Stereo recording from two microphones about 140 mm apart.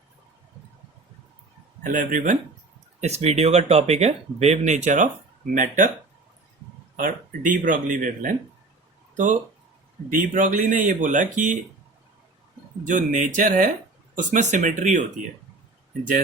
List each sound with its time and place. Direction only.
1.8 s speech: 75° right (ahead or behind)
3.0 s speech: 50° right (ahead or behind)
5.5 s speech: 70° right (ahead or behind)
6.9 s speech: 70° right (ahead or behind)
12.8 s speech: 65° right (ahead or behind)